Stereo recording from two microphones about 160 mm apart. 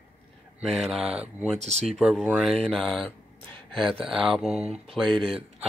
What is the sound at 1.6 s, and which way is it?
Speech, 45° right (ahead or behind).